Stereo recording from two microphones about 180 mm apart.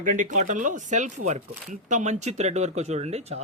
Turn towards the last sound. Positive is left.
turn(degrees=-35)  # may be behind; listen again after turning